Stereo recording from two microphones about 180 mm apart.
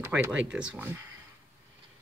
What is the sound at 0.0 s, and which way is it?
Speech, 10° right (ahead or behind).